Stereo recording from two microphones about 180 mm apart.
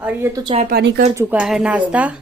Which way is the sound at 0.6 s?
65° right (ahead or behind).